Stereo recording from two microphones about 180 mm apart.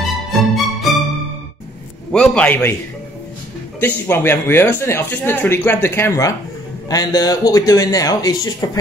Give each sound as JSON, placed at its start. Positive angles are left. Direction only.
{"t": 0.3, "sound": "music", "side_deg": 0}
{"t": 2.1, "sound": "speech", "side_deg": 5}
{"t": 3.8, "sound": "a man's voice", "side_deg": 10}